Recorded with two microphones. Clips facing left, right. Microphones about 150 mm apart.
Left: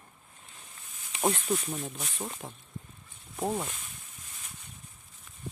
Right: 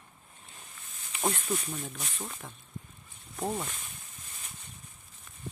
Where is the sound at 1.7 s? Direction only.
5° left (ahead or behind).